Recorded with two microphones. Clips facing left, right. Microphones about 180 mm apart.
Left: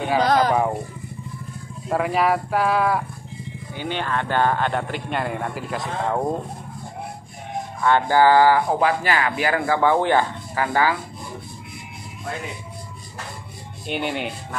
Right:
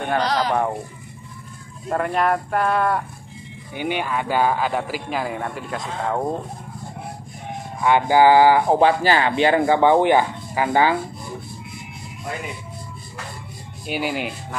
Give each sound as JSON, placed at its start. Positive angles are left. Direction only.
{"t": 0.2, "sound": "speech", "side_deg": 50}
{"t": 1.9, "sound": "speech", "side_deg": 5}
{"t": 3.7, "sound": "speech", "side_deg": -15}
{"t": 7.8, "sound": "speech", "side_deg": -15}
{"t": 13.8, "sound": "speech", "side_deg": -5}